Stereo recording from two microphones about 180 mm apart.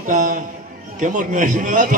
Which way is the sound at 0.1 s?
45° right (ahead or behind).